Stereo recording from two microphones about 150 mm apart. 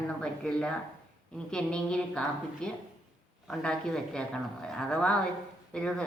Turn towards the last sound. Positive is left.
turn(degrees=5)  # may be behind; listen again after turning